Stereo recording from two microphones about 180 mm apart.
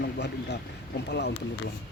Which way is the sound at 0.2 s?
70° left (ahead or behind).